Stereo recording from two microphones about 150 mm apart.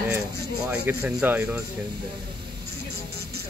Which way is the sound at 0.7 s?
10° right (ahead or behind).